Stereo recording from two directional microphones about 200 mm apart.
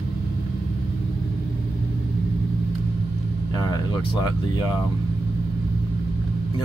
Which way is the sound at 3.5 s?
15° left (ahead or behind).